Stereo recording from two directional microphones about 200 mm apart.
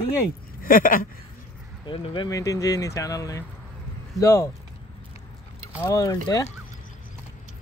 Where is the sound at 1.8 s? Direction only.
25° left (ahead or behind).